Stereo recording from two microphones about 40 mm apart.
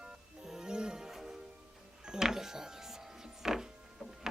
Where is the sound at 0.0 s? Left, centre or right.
Centre.